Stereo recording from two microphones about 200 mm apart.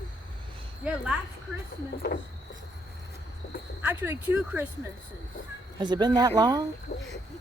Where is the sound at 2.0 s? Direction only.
60° left (ahead or behind).